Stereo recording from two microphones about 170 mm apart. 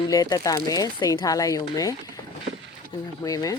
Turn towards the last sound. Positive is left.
turn(degrees=20)  # may be behind; listen again after turning